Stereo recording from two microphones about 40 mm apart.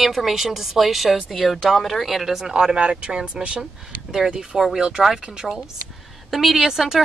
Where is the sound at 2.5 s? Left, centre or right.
Right.